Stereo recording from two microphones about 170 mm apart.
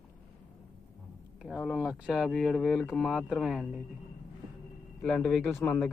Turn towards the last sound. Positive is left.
turn(degrees=15)  # may be behind; listen again after turning